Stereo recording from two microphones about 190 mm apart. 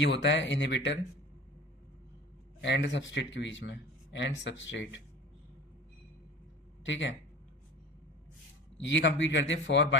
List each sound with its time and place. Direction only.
0.0 s a man's voice: 70° left (ahead or behind)
2.6 s a man's voice: 70° left (ahead or behind)
6.8 s a man's voice: 70° left (ahead or behind)
8.8 s a man's voice: 75° left (ahead or behind)